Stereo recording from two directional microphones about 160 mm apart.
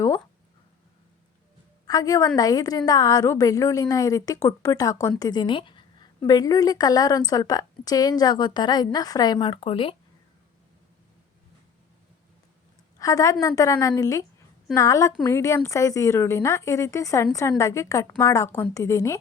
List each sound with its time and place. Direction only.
1.9 s a woman's voice: 20° left (ahead or behind)
13.0 s a woman's voice: 20° left (ahead or behind)